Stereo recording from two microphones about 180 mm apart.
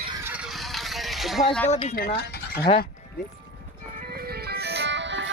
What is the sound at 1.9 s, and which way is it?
Speech, 60° left (ahead or behind).